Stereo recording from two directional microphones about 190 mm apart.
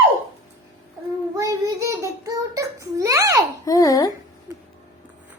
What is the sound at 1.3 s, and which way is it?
A child's voice, 15° right (ahead or behind).